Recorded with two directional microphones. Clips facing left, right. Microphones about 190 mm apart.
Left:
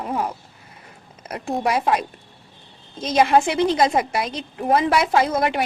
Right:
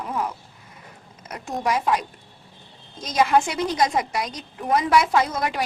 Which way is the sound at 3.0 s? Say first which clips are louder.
Left 3 dB; 30° left (ahead or behind).